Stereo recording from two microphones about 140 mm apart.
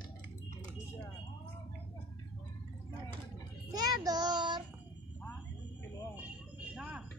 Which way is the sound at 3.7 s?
30° right (ahead or behind).